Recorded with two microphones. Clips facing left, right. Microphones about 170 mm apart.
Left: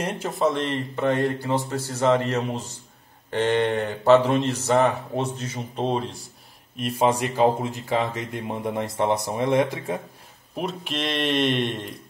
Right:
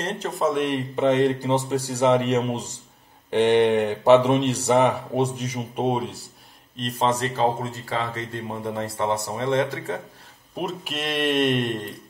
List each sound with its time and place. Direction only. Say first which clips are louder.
0.0 s speech: left 1 dB; 5° left (ahead or behind)
0.7 s speech: right 3 dB; 15° right (ahead or behind)
6.8 s speech: left 2 dB; 10° left (ahead or behind)
10.5 s speech: even; centre (ahead or behind)